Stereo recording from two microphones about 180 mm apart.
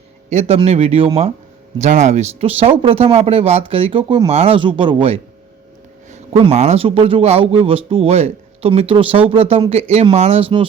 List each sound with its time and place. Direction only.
0.3 s speech: 35° right (ahead or behind)
6.5 s speech: 35° right (ahead or behind)